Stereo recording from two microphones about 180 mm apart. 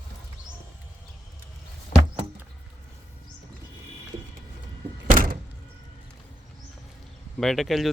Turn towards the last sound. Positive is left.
turn(degrees=0)  # may be behind; listen again after turning